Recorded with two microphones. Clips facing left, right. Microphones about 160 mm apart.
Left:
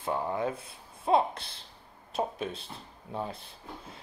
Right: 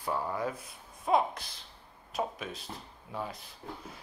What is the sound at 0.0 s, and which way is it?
Speech, 20° left (ahead or behind).